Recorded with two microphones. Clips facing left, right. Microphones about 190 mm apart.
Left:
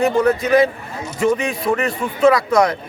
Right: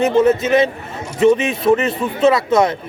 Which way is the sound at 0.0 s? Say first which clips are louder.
Right 2 dB; 20° right (ahead or behind).